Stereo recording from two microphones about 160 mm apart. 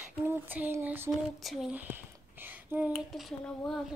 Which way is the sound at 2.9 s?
Centre (ahead or behind).